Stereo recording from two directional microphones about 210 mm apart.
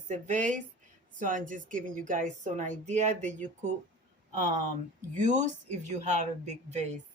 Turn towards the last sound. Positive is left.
turn(degrees=-35)  # may be behind; listen again after turning